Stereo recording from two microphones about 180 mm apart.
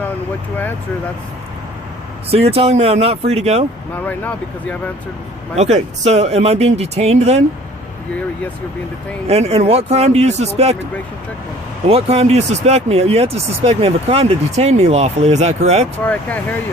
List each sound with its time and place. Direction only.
2.3 s speech: 35° right (ahead or behind)
4.0 s speech: 10° left (ahead or behind)
5.5 s speech: 40° right (ahead or behind)
9.2 s speech: 35° right (ahead or behind)
11.9 s speech: 35° right (ahead or behind)
16.0 s speech: 10° left (ahead or behind)